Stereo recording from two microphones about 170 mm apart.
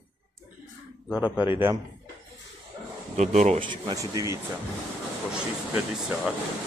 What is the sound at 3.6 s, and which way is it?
Speech, 25° right (ahead or behind).